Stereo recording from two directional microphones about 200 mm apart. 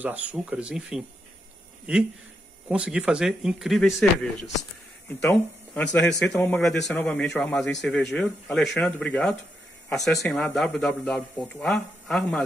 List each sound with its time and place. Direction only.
0.0 s speech: 5° right (ahead or behind)
2.7 s a man's voice: 5° right (ahead or behind)